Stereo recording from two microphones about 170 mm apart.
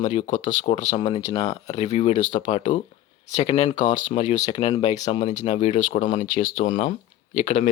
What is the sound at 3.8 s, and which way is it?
Speech, 45° left (ahead or behind).